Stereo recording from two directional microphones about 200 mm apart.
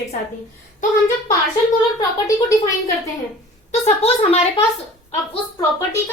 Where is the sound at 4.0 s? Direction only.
30° left (ahead or behind).